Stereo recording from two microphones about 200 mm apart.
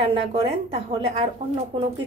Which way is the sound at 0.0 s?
30° right (ahead or behind).